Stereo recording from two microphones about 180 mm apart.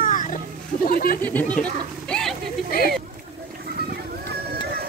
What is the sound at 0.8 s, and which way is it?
Speech, 55° left (ahead or behind).